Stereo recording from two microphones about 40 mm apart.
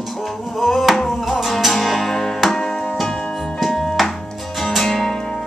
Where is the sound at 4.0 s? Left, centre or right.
Centre.